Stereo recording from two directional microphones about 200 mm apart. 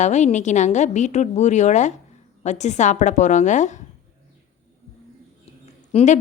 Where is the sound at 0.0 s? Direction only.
35° left (ahead or behind).